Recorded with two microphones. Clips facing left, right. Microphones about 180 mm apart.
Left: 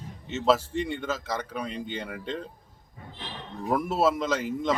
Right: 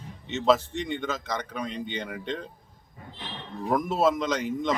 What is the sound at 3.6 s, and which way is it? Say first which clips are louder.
Speech: right 1 dB; 5° left (ahead or behind).